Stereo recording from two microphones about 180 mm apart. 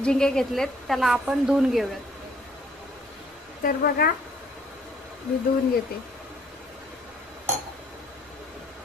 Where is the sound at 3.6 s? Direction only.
55° left (ahead or behind).